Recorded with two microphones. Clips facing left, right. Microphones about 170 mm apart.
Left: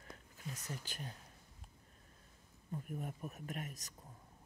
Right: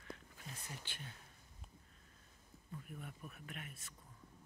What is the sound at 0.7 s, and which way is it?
Speech, 40° left (ahead or behind).